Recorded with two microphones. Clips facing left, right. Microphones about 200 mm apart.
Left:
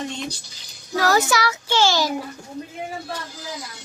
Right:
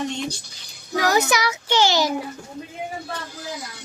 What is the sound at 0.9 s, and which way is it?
A child's voice, 15° right (ahead or behind).